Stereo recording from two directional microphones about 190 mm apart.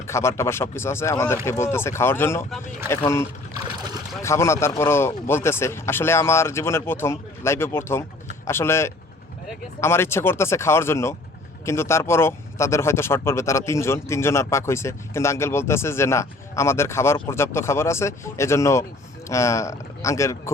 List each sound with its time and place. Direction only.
0.1 s speech: 15° left (ahead or behind)